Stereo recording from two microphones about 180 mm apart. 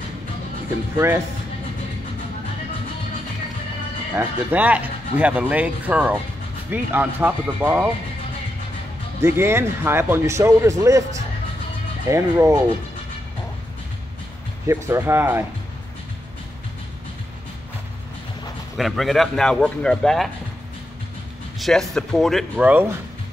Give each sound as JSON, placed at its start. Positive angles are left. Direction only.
{"t": 0.9, "sound": "speech", "side_deg": -15}
{"t": 4.1, "sound": "speech", "side_deg": -10}
{"t": 9.2, "sound": "speech", "side_deg": -15}
{"t": 12.1, "sound": "speech", "side_deg": -15}
{"t": 14.7, "sound": "speech", "side_deg": -15}
{"t": 18.8, "sound": "speech", "side_deg": 0}
{"t": 21.5, "sound": "speech", "side_deg": 0}